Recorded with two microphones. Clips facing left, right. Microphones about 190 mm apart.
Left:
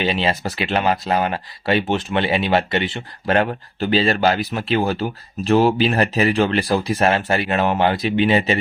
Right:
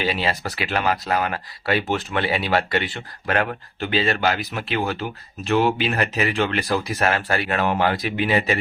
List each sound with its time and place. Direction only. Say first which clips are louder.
0.0 s speech: left 3 dB; 25° left (ahead or behind)